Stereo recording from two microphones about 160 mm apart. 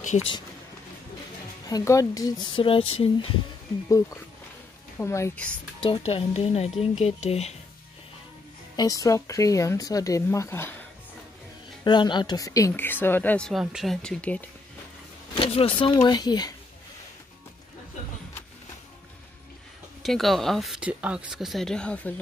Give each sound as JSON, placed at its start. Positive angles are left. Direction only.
{"t": 1.7, "sound": "speech", "side_deg": 20}
{"t": 4.9, "sound": "a woman's voice", "side_deg": 15}
{"t": 5.8, "sound": "speech", "side_deg": 35}
{"t": 8.7, "sound": "speech", "side_deg": 20}
{"t": 11.8, "sound": "speech", "side_deg": 30}
{"t": 13.5, "sound": "speech", "side_deg": 0}
{"t": 15.3, "sound": "speech", "side_deg": 35}
{"t": 20.0, "sound": "speech", "side_deg": 0}